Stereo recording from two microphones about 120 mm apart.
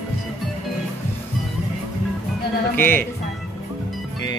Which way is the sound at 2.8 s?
15° left (ahead or behind).